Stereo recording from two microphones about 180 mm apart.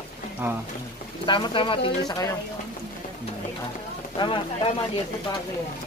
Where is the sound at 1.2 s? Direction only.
25° left (ahead or behind).